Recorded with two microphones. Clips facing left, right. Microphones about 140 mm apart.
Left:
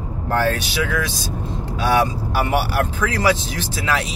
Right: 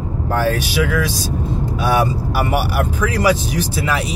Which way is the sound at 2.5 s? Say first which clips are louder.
Right 1 dB; 10° right (ahead or behind).